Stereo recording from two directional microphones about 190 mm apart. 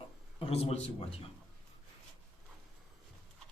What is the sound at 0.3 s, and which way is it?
Speech, 30° left (ahead or behind).